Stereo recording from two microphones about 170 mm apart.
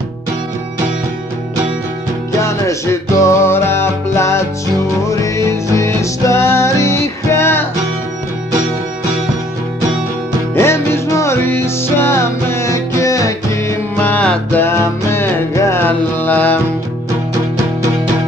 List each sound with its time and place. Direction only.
2.4 s music: 15° left (ahead or behind)
10.5 s music: 15° left (ahead or behind)